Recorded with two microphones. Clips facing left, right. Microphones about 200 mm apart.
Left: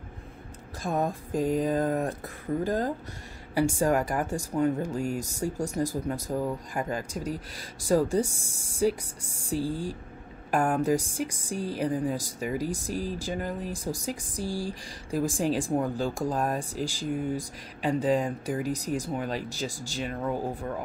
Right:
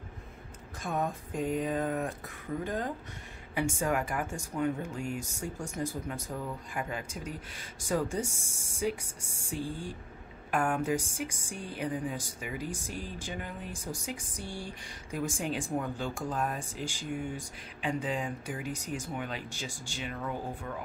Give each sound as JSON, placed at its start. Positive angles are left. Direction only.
{"t": 0.8, "sound": "a woman's voice", "side_deg": 35}